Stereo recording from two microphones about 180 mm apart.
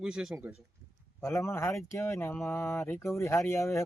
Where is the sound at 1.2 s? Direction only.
15° left (ahead or behind).